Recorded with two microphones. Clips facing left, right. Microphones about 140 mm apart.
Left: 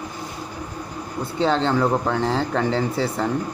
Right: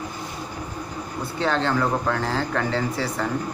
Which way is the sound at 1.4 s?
25° left (ahead or behind).